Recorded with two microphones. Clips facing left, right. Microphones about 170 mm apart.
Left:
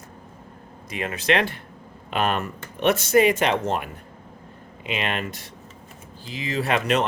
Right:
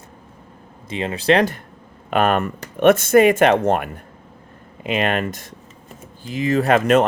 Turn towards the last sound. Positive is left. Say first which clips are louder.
# right 7 dB
turn(degrees=-45)  # may be behind; listen again after turning